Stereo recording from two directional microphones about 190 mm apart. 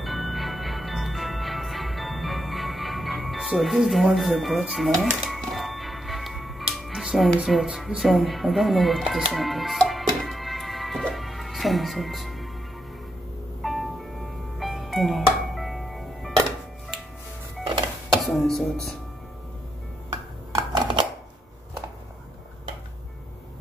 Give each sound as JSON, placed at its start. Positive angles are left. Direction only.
{"t": 0.0, "sound": "music", "side_deg": 0}
{"t": 13.6, "sound": "music", "side_deg": 0}
{"t": 18.2, "sound": "speech", "side_deg": 0}
{"t": 20.5, "sound": "scissors", "side_deg": -25}